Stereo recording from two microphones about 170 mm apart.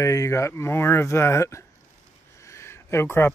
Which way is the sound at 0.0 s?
20° left (ahead or behind).